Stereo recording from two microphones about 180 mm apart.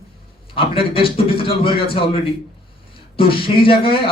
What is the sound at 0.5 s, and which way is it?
Speech, 30° left (ahead or behind).